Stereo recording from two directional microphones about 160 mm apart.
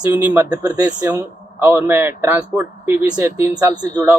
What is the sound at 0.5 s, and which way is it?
A man's voice, 20° right (ahead or behind).